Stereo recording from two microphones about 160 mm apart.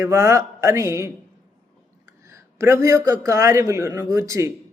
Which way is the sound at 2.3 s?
15° right (ahead or behind).